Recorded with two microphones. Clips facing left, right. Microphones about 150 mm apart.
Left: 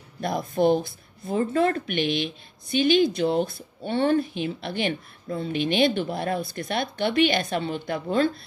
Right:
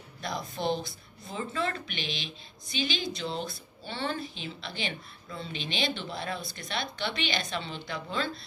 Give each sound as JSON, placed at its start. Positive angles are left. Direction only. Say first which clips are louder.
{"t": 0.2, "sound": "speech", "louder": "left 10 dB", "side_deg": 55}